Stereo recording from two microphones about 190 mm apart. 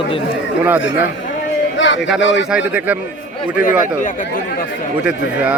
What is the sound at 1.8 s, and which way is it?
Speech, 75° left (ahead or behind).